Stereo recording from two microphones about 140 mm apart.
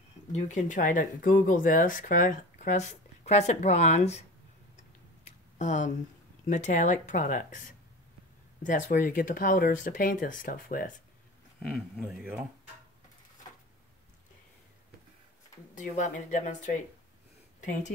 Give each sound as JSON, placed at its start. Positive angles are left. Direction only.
{"t": 0.3, "sound": "speech", "side_deg": 60}
{"t": 4.7, "sound": "a sound", "side_deg": 55}
{"t": 6.4, "sound": "speech", "side_deg": 60}
{"t": 11.6, "sound": "a man's voice", "side_deg": 0}
{"t": 15.7, "sound": "speech", "side_deg": 60}